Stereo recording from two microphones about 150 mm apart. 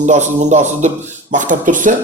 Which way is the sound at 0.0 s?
55° right (ahead or behind).